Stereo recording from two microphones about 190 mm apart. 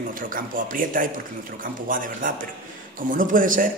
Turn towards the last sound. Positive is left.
turn(degrees=-45)  # may be behind; listen again after turning